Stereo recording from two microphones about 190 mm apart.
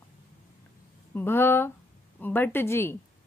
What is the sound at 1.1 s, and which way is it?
Speech, 10° left (ahead or behind).